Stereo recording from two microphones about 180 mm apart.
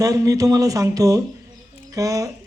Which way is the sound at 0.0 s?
20° right (ahead or behind).